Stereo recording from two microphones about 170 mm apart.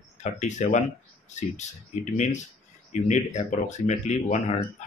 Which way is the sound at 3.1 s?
45° left (ahead or behind).